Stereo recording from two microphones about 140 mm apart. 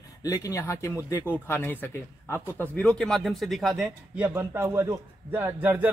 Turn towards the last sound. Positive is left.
turn(degrees=-15)  # may be behind; listen again after turning